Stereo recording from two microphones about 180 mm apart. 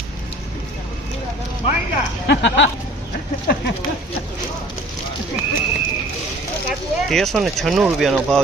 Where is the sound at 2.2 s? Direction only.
75° left (ahead or behind).